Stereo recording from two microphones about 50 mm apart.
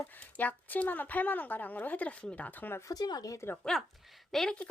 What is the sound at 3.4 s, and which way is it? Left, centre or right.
Speech, left.